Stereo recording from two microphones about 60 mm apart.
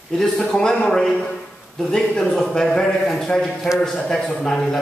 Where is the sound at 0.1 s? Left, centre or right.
Centre.